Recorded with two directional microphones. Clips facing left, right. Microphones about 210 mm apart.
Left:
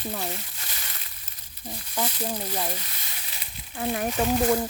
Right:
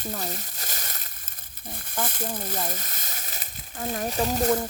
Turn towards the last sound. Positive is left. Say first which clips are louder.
# left 2 dB
turn(degrees=-40)  # may be behind; listen again after turning